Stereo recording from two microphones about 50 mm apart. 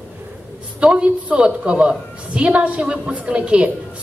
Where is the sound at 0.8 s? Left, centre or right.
Right.